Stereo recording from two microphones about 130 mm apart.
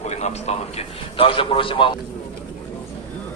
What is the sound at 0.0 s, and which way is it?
A man's voice, 55° left (ahead or behind).